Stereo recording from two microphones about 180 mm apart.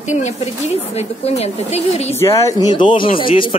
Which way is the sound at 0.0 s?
40° left (ahead or behind).